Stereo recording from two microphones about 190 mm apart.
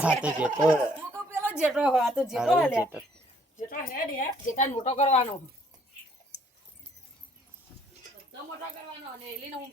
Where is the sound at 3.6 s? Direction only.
50° left (ahead or behind).